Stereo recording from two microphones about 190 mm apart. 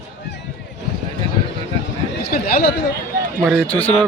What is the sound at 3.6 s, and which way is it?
Speech, 5° left (ahead or behind).